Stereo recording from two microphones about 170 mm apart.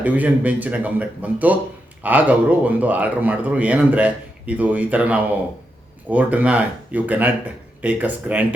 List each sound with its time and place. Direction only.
0.0 s speech: 10° right (ahead or behind)